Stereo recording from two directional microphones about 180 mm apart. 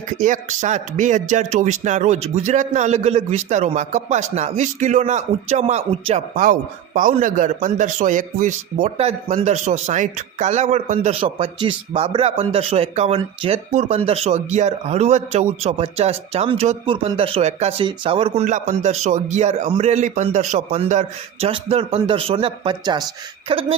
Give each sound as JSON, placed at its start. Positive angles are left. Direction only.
{"t": 0.2, "sound": "a man's voice", "side_deg": -45}
{"t": 6.3, "sound": "a man's voice", "side_deg": -50}